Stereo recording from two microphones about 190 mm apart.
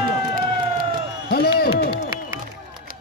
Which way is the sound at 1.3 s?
55° left (ahead or behind).